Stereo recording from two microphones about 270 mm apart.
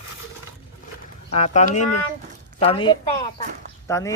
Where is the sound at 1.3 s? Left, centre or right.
Left.